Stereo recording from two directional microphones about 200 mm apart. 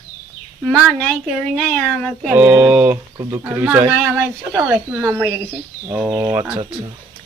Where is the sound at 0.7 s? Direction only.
5° left (ahead or behind).